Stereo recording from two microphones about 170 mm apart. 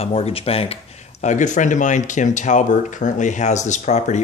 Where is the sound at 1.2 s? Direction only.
45° left (ahead or behind).